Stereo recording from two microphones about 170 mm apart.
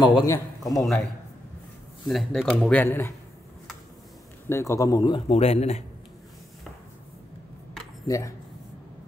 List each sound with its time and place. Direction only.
0.0 s a man's voice: 25° left (ahead or behind)
0.7 s a man's voice: centre (ahead or behind)
4.5 s a man's voice: 15° left (ahead or behind)
5.3 s speech: 35° left (ahead or behind)